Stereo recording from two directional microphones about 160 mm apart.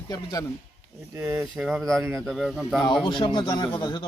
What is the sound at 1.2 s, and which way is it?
Speech, 15° right (ahead or behind).